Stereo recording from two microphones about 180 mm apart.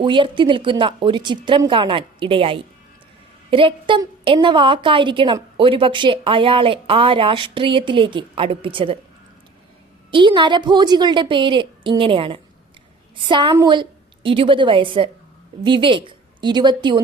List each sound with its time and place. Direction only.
0.0 s a woman's voice: 25° right (ahead or behind)
10.1 s a woman's voice: 25° right (ahead or behind)